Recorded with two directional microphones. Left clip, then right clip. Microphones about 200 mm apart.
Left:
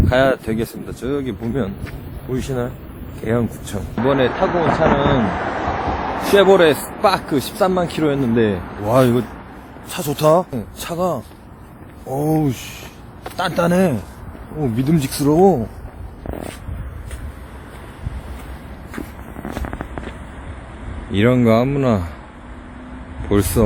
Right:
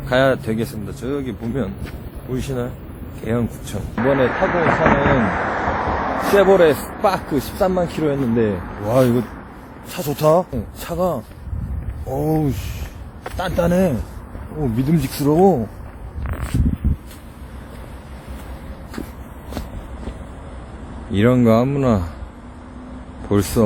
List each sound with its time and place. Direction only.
0.0 s speech: 15° left (ahead or behind)
2.3 s a man's voice: 40° left (ahead or behind)
4.2 s speech: centre (ahead or behind)
4.4 s speech: 15° right (ahead or behind)
4.9 s speech: centre (ahead or behind)
5.6 s a sound: 40° left (ahead or behind)
6.3 s speech: 5° left (ahead or behind)
21.1 s speech: centre (ahead or behind)
23.2 s speech: centre (ahead or behind)